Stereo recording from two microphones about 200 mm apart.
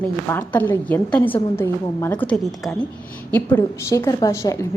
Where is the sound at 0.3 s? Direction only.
10° left (ahead or behind).